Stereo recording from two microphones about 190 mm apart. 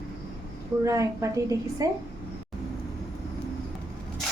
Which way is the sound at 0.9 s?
15° right (ahead or behind).